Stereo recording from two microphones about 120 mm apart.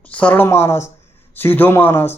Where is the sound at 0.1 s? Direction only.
10° left (ahead or behind).